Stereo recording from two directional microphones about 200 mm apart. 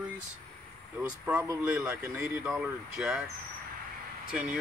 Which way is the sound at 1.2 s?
10° right (ahead or behind).